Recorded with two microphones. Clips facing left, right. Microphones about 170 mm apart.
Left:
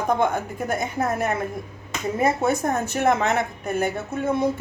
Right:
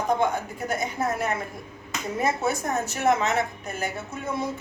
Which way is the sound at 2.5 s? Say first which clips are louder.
Left 4 dB; 55° left (ahead or behind).